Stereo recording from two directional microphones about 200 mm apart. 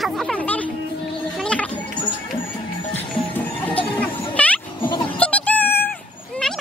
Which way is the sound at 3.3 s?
5° left (ahead or behind).